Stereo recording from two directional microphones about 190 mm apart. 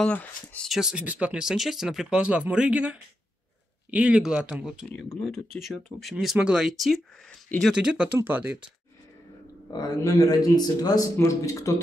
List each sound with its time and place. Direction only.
0.0 s speech: 5° left (ahead or behind); by 8.5 s 10° right (ahead or behind)
9.7 s speech: 20° left (ahead or behind)